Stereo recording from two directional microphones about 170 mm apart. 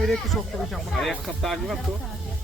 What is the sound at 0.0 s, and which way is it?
Speech, centre (ahead or behind).